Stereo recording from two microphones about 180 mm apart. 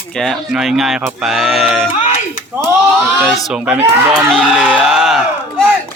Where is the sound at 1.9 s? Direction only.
45° left (ahead or behind).